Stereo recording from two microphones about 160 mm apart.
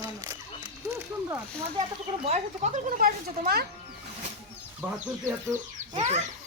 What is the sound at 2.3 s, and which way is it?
Speech, 45° right (ahead or behind).